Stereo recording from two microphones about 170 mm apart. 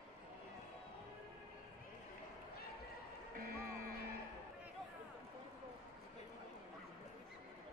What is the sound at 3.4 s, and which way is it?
Music, 60° right (ahead or behind).